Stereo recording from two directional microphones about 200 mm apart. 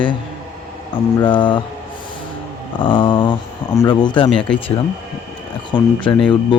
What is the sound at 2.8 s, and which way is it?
Speech, 25° left (ahead or behind).